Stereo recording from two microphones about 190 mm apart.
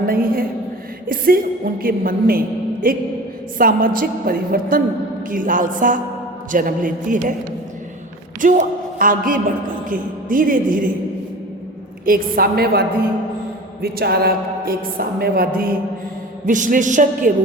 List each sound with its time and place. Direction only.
0.1 s a woman's voice: 50° right (ahead or behind)
8.4 s a woman's voice: 45° right (ahead or behind)
12.0 s a woman's voice: 50° right (ahead or behind)
13.8 s a woman's voice: 55° right (ahead or behind)